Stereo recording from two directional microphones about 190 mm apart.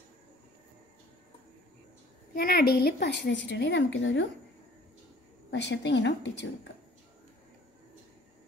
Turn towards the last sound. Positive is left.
turn(degrees=70)  # may be behind; listen again after turning